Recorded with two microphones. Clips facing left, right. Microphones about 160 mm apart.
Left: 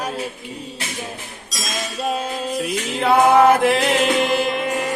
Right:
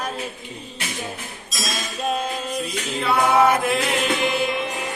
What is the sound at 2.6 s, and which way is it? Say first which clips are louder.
Music: left 7 dB; 65° left (ahead or behind).